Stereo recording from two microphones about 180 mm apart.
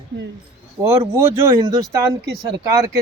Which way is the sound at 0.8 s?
15° right (ahead or behind).